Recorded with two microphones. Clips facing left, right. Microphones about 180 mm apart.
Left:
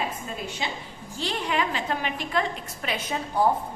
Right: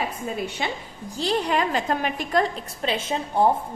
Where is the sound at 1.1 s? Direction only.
35° right (ahead or behind).